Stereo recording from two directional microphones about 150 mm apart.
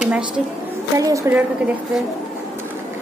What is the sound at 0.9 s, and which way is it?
Speech, 20° right (ahead or behind).